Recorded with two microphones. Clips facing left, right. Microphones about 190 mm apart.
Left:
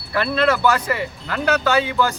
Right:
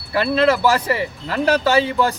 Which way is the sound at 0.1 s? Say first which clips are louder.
Right 2 dB; 25° right (ahead or behind).